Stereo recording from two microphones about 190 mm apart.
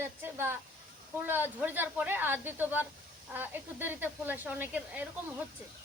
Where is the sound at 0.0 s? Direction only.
10° right (ahead or behind).